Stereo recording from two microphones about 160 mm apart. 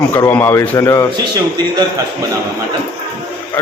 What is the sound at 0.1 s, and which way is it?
Speech, 10° left (ahead or behind).